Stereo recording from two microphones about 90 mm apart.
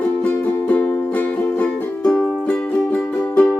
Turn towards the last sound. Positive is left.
turn(degrees=20)  # may be behind; listen again after turning